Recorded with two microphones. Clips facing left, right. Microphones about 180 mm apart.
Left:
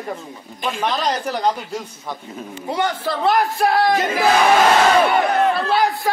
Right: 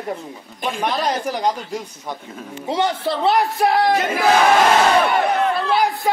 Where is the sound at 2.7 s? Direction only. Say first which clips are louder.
Right 2 dB; 25° right (ahead or behind).